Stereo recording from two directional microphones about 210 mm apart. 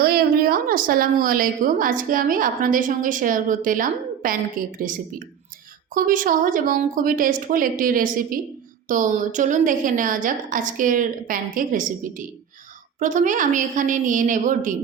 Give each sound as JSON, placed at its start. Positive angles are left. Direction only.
{"t": 0.0, "sound": "a woman's voice", "side_deg": -45}